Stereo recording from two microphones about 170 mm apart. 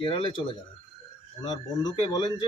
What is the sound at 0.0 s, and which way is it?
Speech, 30° left (ahead or behind).